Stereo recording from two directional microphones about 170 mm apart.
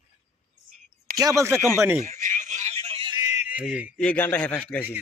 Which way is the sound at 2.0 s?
50° right (ahead or behind).